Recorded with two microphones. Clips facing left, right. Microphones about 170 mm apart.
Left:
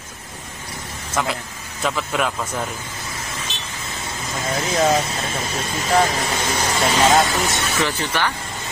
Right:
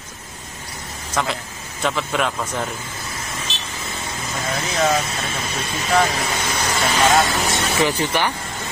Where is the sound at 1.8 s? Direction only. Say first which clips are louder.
Right 1 dB; centre (ahead or behind).